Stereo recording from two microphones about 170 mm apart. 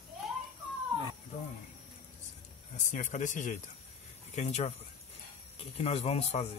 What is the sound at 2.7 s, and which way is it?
Speech, 45° left (ahead or behind).